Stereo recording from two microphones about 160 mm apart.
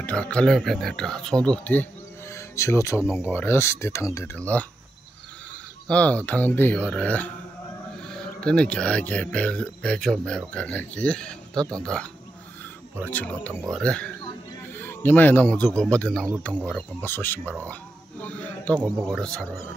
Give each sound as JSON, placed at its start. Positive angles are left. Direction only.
{"t": 0.0, "sound": "speech", "side_deg": 5}
{"t": 5.9, "sound": "a man's voice", "side_deg": 10}